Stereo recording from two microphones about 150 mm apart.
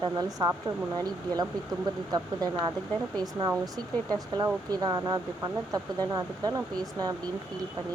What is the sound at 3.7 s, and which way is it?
Speech, 25° right (ahead or behind).